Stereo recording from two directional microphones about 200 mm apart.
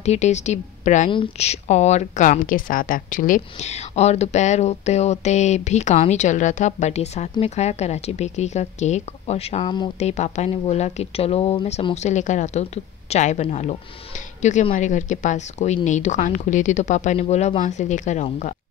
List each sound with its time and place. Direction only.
0.0 s a woman's voice: 35° left (ahead or behind)